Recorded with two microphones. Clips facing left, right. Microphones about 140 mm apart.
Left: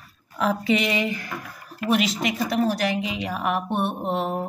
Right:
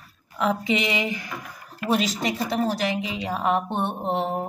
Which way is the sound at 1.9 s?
35° right (ahead or behind).